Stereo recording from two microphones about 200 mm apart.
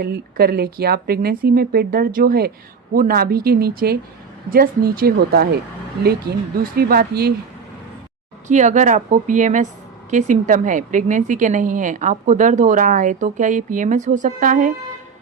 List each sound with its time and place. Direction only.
0.0 s speech: 50° right (ahead or behind)
6.7 s speech: 50° right (ahead or behind)
8.4 s a woman's voice: 35° right (ahead or behind)